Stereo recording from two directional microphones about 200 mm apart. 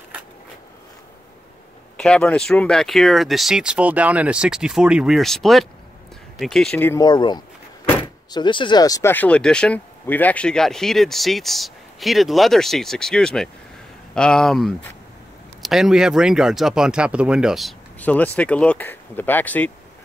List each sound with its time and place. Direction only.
2.0 s speech: 5° left (ahead or behind)